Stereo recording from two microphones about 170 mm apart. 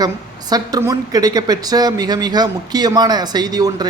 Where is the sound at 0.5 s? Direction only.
20° right (ahead or behind).